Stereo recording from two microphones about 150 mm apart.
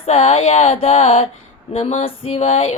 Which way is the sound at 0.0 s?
45° left (ahead or behind).